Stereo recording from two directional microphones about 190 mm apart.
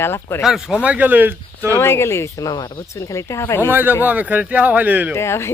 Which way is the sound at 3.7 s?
10° right (ahead or behind).